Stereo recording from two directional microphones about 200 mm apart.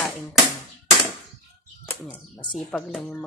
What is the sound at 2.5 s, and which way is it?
Speech, 5° left (ahead or behind).